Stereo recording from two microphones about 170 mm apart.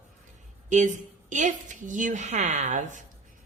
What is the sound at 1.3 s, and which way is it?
A woman's voice, 45° right (ahead or behind).